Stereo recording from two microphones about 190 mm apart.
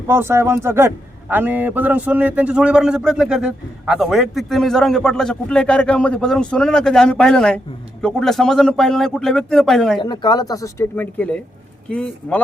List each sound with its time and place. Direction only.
0.1 s a man's voice: 10° right (ahead or behind)
10.0 s speech: 25° left (ahead or behind); by 12.4 s 5° left (ahead or behind)